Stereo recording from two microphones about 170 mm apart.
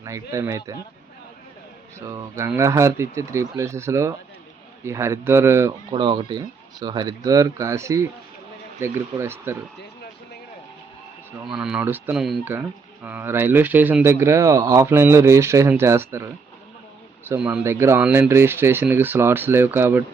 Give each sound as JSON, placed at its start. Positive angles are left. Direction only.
{"t": 0.0, "sound": "speech", "side_deg": -20}
{"t": 2.0, "sound": "speech", "side_deg": -20}
{"t": 5.9, "sound": "speech", "side_deg": -30}
{"t": 11.4, "sound": "speech", "side_deg": -5}